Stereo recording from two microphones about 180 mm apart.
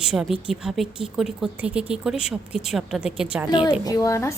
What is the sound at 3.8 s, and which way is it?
Speech, 20° left (ahead or behind).